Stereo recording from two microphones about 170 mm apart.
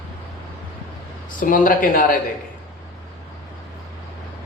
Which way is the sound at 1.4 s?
50° left (ahead or behind).